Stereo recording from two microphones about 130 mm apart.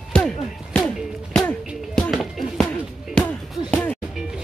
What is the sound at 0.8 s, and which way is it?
Music, centre (ahead or behind).